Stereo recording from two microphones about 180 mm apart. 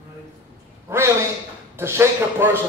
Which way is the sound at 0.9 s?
15° right (ahead or behind).